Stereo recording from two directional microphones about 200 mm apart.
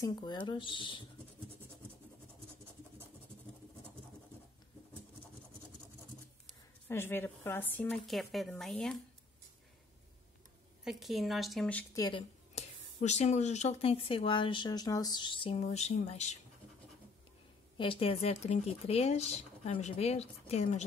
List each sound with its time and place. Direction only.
0.0 s speech: 20° left (ahead or behind)
6.9 s a woman's voice: 10° left (ahead or behind)
10.8 s speech: centre (ahead or behind)
11.9 s speech: 20° left (ahead or behind)
17.7 s speech: 25° left (ahead or behind)